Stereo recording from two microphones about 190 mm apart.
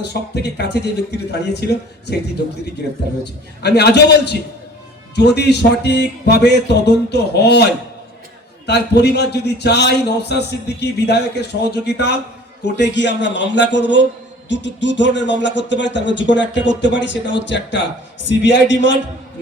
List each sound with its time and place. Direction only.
0.0 s a man's voice: 60° left (ahead or behind)
3.6 s a man's voice: 60° left (ahead or behind)